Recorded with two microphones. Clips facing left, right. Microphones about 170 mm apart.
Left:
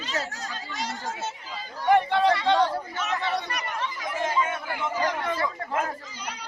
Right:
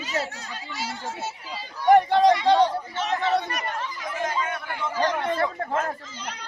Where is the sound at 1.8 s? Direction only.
40° right (ahead or behind).